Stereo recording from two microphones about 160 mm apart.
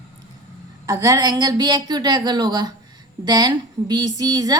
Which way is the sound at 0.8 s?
20° right (ahead or behind).